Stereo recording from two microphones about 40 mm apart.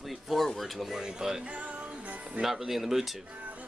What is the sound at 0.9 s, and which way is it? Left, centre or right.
Speech, centre.